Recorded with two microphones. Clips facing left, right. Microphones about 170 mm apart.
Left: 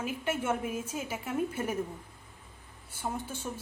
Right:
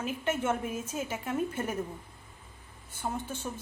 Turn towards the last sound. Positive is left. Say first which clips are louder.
# right 1 dB
turn(degrees=10)  # may be behind; listen again after turning